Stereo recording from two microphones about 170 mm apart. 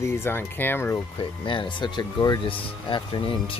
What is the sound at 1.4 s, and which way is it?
Speech, 30° left (ahead or behind).